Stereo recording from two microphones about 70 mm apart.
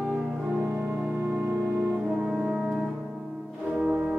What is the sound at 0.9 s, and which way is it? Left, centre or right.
Music, right.